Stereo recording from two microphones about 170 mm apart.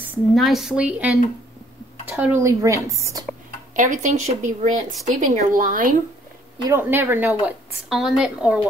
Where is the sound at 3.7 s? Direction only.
50° right (ahead or behind).